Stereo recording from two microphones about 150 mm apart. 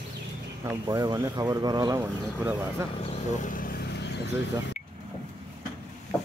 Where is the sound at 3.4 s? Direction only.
65° left (ahead or behind).